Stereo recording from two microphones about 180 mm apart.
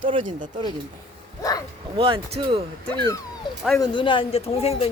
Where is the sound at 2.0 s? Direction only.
30° right (ahead or behind).